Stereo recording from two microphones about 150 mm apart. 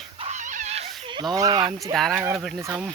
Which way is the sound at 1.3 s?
25° right (ahead or behind).